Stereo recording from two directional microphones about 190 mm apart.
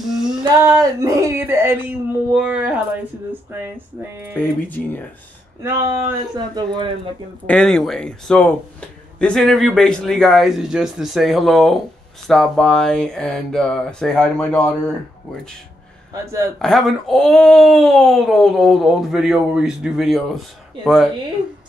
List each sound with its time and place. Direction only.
0.0 s female singing: centre (ahead or behind)
0.4 s speech: 20° right (ahead or behind)
4.4 s speech: 10° left (ahead or behind)
5.6 s speech: 15° right (ahead or behind)
7.4 s speech: 5° left (ahead or behind)
16.1 s speech: 15° right (ahead or behind)
16.5 s speech: centre (ahead or behind)